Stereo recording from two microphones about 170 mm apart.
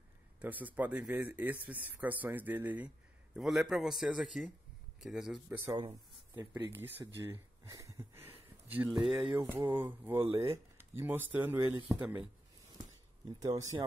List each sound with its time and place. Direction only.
0.4 s speech: 10° right (ahead or behind)
6.3 s speech: 15° right (ahead or behind)
7.2 s a sound: 15° right (ahead or behind)
8.6 s speech: 10° right (ahead or behind)
9.4 s speech: 25° right (ahead or behind)
9.8 s speech: 10° right (ahead or behind)
13.4 s speech: 20° right (ahead or behind)